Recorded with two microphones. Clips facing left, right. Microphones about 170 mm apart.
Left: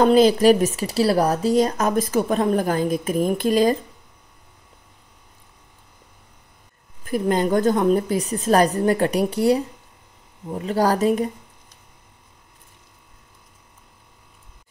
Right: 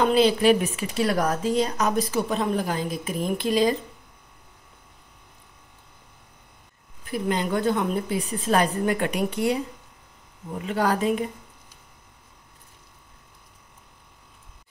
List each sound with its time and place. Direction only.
0.0 s speech: 45° left (ahead or behind)
7.1 s a woman's voice: 45° left (ahead or behind)